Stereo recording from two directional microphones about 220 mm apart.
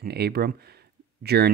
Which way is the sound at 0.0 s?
45° right (ahead or behind).